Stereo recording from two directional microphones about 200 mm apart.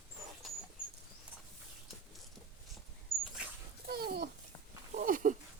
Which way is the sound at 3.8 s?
50° right (ahead or behind).